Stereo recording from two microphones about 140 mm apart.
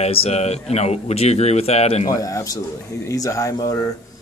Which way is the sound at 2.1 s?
25° left (ahead or behind).